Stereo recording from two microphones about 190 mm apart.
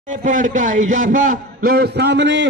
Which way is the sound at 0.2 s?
40° right (ahead or behind).